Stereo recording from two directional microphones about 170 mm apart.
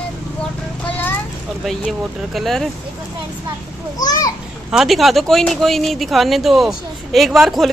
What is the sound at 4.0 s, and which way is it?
Speech, 20° left (ahead or behind).